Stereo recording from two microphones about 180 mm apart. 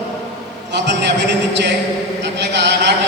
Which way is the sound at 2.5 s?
75° right (ahead or behind).